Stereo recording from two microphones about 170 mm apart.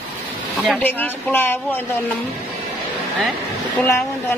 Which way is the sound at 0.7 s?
10° left (ahead or behind).